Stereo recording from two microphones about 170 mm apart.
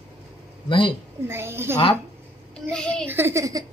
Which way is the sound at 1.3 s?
15° right (ahead or behind).